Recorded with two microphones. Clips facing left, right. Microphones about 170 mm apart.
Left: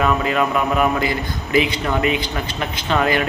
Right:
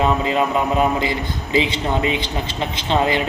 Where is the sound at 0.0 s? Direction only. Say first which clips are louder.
Even; 20° right (ahead or behind).